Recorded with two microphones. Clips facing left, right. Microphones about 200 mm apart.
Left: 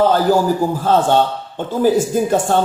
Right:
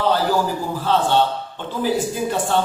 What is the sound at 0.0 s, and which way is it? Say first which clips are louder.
A man's voice: left 5 dB; 45° left (ahead or behind).